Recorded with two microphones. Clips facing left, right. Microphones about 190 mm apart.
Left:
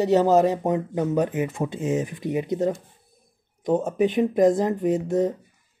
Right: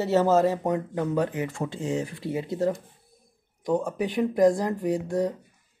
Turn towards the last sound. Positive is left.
turn(degrees=20)  # may be behind; listen again after turning